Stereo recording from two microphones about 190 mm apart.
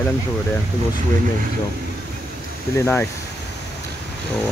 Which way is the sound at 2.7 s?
10° left (ahead or behind).